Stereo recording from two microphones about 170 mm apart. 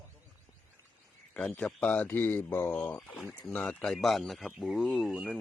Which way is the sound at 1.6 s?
5° left (ahead or behind).